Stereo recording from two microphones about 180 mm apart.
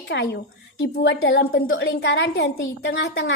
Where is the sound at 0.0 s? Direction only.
70° left (ahead or behind).